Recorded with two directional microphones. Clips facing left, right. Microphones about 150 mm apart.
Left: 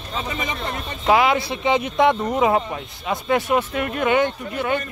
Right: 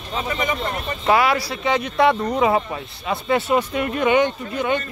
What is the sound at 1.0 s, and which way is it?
Speech, 15° left (ahead or behind).